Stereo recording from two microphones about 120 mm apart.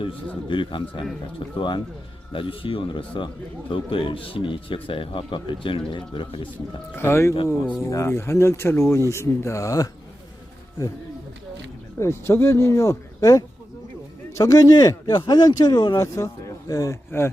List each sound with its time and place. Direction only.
0.4 s speech: 45° left (ahead or behind)
6.9 s speech: 20° left (ahead or behind)
11.9 s speech: 20° left (ahead or behind)